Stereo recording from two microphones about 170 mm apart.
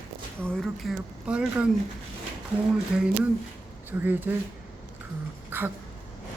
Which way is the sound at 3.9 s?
10° right (ahead or behind).